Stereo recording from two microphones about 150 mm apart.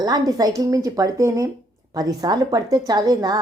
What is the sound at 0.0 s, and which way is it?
Speech, 25° right (ahead or behind).